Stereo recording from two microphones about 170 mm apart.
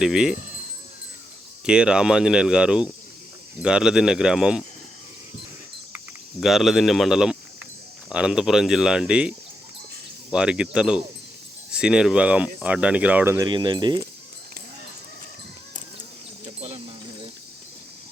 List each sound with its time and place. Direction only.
0.0 s speech: 5° right (ahead or behind)
1.6 s speech: 5° right (ahead or behind)
6.4 s speech: centre (ahead or behind)
10.3 s speech: 5° right (ahead or behind); by 14.0 s 25° right (ahead or behind)
16.6 s a sound: 35° right (ahead or behind)